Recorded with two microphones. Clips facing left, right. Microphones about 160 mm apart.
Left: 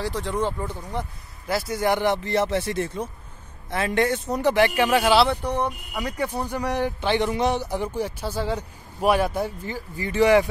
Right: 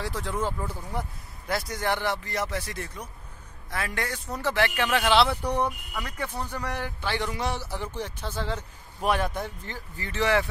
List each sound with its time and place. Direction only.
0.0 s a man's voice: centre (ahead or behind)
5.3 s speech: 10° right (ahead or behind)
5.9 s a man's voice: 15° left (ahead or behind)